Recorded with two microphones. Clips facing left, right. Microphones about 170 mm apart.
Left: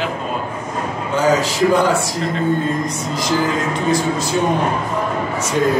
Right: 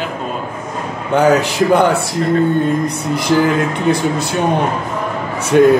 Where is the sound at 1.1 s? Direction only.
60° right (ahead or behind).